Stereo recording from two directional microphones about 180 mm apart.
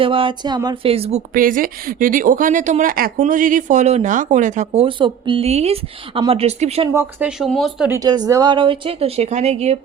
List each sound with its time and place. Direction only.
0.0 s a woman's voice: 30° right (ahead or behind)
1.3 s speech: 50° right (ahead or behind)
6.9 s speech: 5° right (ahead or behind)
7.9 s a woman's voice: 20° right (ahead or behind); by 9.7 s 35° right (ahead or behind)